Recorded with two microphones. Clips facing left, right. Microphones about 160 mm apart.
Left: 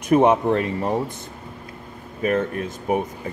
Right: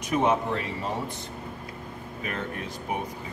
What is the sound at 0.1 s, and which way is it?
Speech, 55° left (ahead or behind).